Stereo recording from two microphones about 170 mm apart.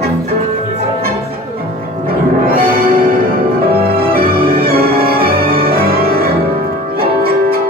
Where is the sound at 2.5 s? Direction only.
60° right (ahead or behind).